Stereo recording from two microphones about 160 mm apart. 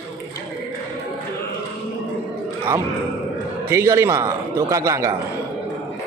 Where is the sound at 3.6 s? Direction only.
15° right (ahead or behind).